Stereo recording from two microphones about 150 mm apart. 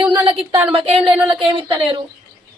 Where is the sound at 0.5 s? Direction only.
40° right (ahead or behind).